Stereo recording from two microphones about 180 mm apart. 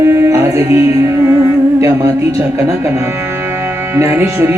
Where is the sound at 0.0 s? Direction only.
15° right (ahead or behind).